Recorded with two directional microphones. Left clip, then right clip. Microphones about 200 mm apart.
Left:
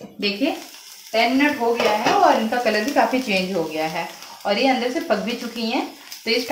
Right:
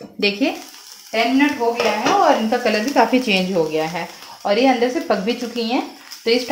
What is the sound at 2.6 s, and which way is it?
Speech, 50° right (ahead or behind).